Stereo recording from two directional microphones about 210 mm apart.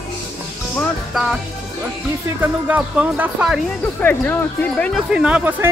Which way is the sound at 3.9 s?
10° left (ahead or behind).